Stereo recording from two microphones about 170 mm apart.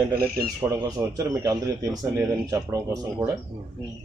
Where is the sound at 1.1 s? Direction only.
20° right (ahead or behind).